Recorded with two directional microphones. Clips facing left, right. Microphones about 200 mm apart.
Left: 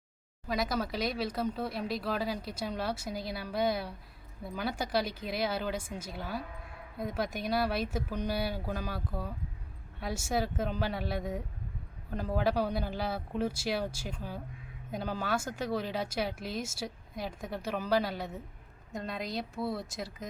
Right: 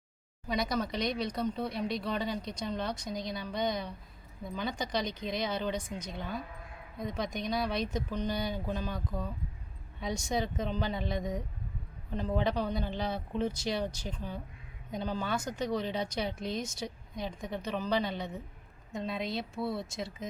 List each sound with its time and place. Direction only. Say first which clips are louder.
0.4 s speech: even; centre (ahead or behind)